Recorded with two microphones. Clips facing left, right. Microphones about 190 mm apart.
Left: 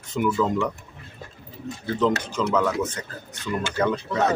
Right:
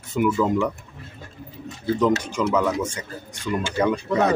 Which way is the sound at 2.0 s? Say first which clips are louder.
Right 1 dB; 10° right (ahead or behind).